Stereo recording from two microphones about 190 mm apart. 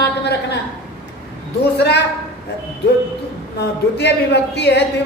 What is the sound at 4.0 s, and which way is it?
Speech, 60° left (ahead or behind).